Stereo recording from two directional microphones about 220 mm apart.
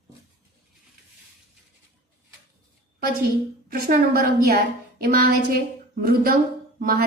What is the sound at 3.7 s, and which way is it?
A woman's voice, 45° right (ahead or behind).